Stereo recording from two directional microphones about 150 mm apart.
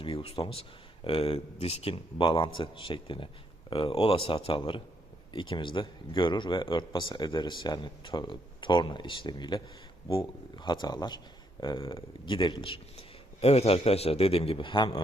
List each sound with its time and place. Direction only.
0.0 s speech: 35° left (ahead or behind)